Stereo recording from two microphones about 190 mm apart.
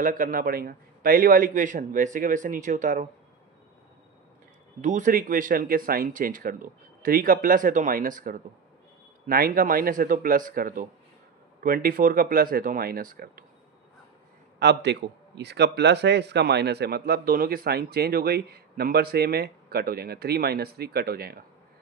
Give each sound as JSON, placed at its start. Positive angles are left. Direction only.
{"t": 0.0, "sound": "a man's voice", "side_deg": -45}
{"t": 4.8, "sound": "a man's voice", "side_deg": -40}
{"t": 14.6, "sound": "a man's voice", "side_deg": -65}